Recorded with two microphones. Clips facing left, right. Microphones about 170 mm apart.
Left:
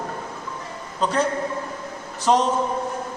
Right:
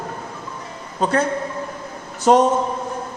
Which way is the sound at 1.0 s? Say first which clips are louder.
Right 3 dB; 55° right (ahead or behind).